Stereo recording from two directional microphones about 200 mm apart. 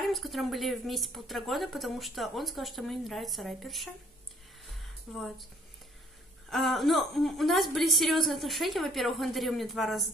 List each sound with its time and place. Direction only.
0.0 s a woman's voice: centre (ahead or behind)
5.1 s a woman's voice: centre (ahead or behind)
6.5 s a woman's voice: centre (ahead or behind)